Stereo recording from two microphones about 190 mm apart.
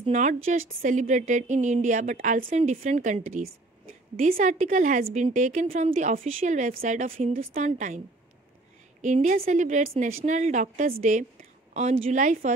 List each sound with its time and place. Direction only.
0.0 s speech: 40° right (ahead or behind)
4.3 s a woman's voice: 45° right (ahead or behind)
9.0 s speech: 40° right (ahead or behind)